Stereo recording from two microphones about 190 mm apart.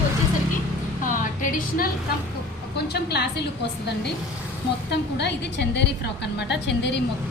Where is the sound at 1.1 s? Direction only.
45° left (ahead or behind).